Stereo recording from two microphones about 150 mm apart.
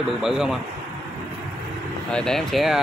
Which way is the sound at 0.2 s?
5° right (ahead or behind).